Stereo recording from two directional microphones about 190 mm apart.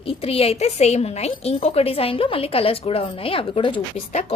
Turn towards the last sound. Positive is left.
turn(degrees=35)  # may be behind; listen again after turning